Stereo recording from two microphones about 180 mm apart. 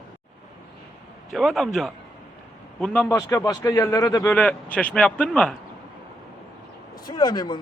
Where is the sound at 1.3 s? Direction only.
Centre (ahead or behind).